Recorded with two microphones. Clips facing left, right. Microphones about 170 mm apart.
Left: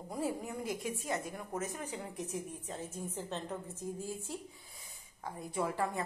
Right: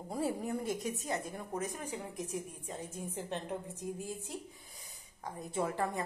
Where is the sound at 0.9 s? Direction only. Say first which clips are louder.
Even; 30° right (ahead or behind).